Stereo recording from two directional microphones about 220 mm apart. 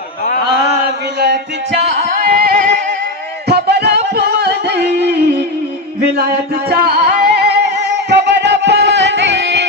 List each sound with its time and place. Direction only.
1.2 s music: 50° right (ahead or behind)
6.7 s music: 45° right (ahead or behind)